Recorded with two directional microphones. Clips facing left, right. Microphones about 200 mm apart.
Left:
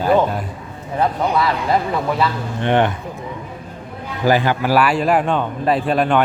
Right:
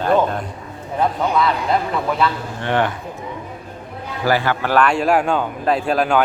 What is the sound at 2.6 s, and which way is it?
Speech, 20° left (ahead or behind).